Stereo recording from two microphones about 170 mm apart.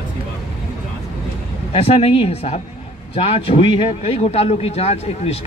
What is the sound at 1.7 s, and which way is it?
A man's voice, 35° left (ahead or behind).